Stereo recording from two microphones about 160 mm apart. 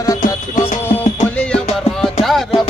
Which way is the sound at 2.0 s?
Centre (ahead or behind).